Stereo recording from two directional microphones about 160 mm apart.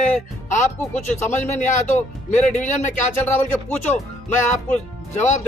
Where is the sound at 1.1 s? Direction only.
50° left (ahead or behind).